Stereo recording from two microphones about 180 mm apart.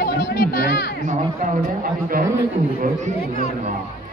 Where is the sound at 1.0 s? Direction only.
45° right (ahead or behind).